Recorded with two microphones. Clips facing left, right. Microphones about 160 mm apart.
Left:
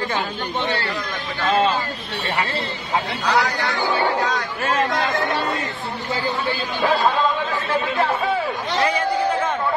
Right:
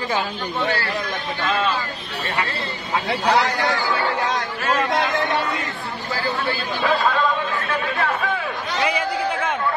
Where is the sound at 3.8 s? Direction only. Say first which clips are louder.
Left 2 dB; 25° left (ahead or behind).